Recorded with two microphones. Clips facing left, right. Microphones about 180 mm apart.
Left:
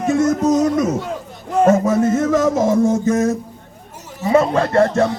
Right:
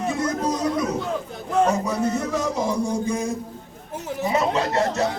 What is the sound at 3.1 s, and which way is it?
Speech, 85° left.